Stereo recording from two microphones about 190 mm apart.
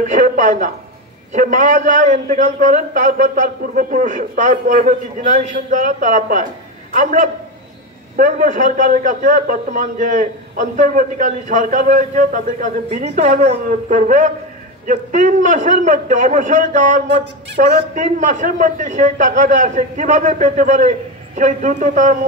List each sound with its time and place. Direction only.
0.0 s a woman's voice: 40° right (ahead or behind)